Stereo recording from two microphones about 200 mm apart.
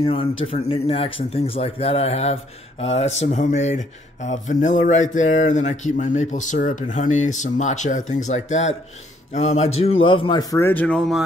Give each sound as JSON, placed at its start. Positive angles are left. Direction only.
{"t": 0.0, "sound": "a man's voice", "side_deg": 30}